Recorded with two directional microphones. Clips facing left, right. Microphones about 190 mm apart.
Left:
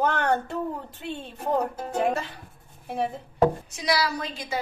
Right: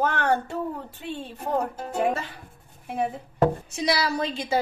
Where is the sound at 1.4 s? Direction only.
5° right (ahead or behind).